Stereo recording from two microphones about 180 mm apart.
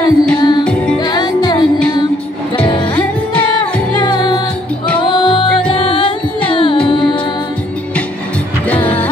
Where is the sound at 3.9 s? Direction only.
25° left (ahead or behind).